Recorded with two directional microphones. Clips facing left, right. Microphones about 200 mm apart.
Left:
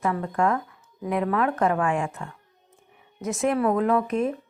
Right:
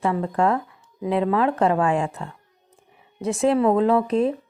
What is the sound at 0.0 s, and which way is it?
Speech, 30° right (ahead or behind).